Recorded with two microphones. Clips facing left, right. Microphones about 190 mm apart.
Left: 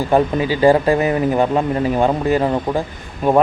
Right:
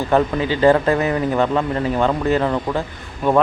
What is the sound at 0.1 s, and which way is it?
Speech, 10° left (ahead or behind).